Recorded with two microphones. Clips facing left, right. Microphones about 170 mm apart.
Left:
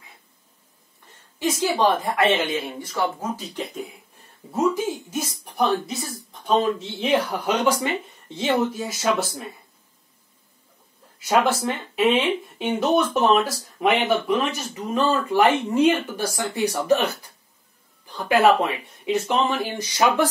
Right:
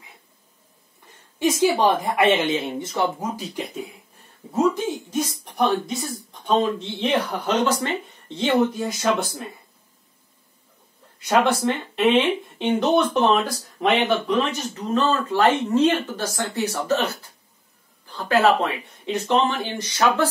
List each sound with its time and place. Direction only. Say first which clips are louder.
1.6 s speech: right 1 dB; 15° right (ahead or behind)
3.3 s speech: right 1 dB; 10° right (ahead or behind)
5.4 s speech: left 1 dB; centre (ahead or behind)
11.1 s speech: right 1 dB; 5° left (ahead or behind)